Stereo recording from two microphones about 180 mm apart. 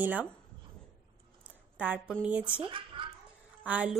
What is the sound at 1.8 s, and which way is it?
Speech, 10° right (ahead or behind).